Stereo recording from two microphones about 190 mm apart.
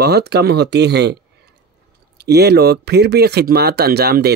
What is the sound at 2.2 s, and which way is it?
Speech, 60° right (ahead or behind).